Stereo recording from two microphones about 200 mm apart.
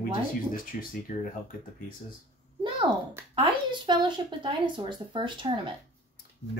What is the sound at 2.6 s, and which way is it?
A child's voice, 20° right (ahead or behind).